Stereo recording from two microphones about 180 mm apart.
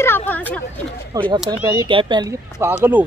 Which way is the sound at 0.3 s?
10° left (ahead or behind).